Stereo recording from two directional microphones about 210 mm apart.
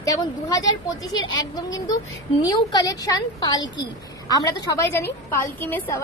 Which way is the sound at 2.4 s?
15° left (ahead or behind).